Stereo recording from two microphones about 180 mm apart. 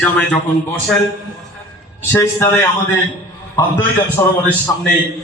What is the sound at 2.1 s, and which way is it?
Speech, 15° left (ahead or behind).